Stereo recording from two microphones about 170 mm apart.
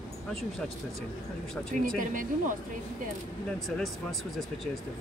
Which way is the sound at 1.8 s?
55° right (ahead or behind).